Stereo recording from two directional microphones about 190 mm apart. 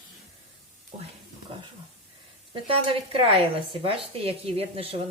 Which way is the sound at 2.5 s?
30° right (ahead or behind).